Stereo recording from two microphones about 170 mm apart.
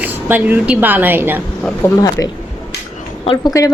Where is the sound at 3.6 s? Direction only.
20° left (ahead or behind).